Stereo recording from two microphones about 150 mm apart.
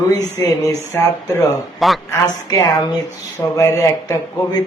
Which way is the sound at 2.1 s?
25° left (ahead or behind).